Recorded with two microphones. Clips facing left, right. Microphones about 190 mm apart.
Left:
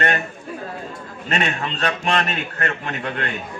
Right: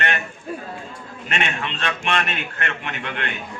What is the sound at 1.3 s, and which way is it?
A man's voice, 40° left (ahead or behind).